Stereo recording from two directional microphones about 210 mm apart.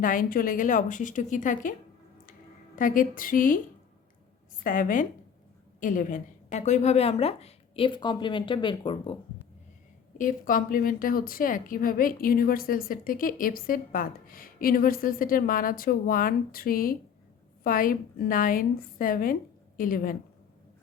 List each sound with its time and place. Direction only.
0.0 s a woman's voice: 40° left (ahead or behind)
2.7 s a woman's voice: 40° left (ahead or behind)
4.6 s a woman's voice: 40° left (ahead or behind); by 9.1 s 25° left (ahead or behind)
10.2 s a woman's voice: 40° left (ahead or behind)